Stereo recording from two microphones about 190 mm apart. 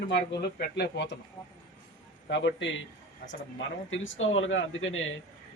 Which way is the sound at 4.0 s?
90° left.